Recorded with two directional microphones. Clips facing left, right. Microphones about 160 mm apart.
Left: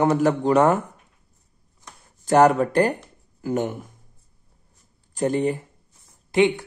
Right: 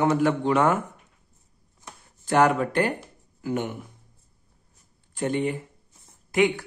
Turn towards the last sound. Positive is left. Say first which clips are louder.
# left 3 dB
turn(degrees=25)  # may be behind; listen again after turning